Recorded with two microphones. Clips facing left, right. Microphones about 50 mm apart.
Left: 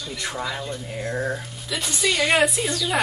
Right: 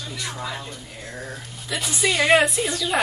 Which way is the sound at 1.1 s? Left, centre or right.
Left.